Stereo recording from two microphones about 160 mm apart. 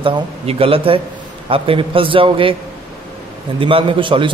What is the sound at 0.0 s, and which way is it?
A man's voice, 35° right (ahead or behind).